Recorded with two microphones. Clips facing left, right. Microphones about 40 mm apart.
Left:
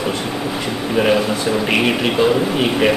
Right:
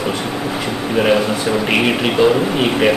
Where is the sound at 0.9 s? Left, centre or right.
Centre.